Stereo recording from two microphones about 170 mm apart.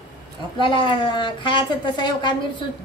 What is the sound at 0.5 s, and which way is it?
Speech, 30° left (ahead or behind).